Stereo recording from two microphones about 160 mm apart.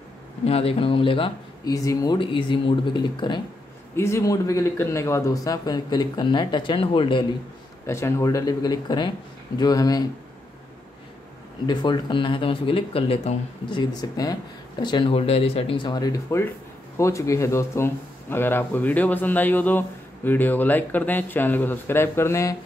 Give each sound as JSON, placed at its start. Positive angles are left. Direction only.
{"t": 0.5, "sound": "speech", "side_deg": 35}
{"t": 1.7, "sound": "speech", "side_deg": 20}
{"t": 3.9, "sound": "speech", "side_deg": 15}
{"t": 7.8, "sound": "speech", "side_deg": 15}
{"t": 11.6, "sound": "speech", "side_deg": 30}
{"t": 13.7, "sound": "speech", "side_deg": 25}